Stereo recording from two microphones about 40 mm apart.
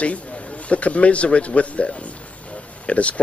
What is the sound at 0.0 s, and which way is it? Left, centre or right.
A man's voice, left.